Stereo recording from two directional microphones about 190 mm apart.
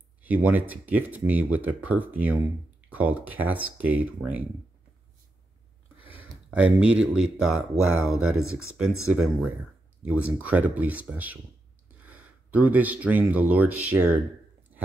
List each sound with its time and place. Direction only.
0.2 s speech: 10° right (ahead or behind)
6.0 s speech: 10° right (ahead or behind)
7.5 s speech: 90° right
9.1 s speech: 10° right (ahead or behind)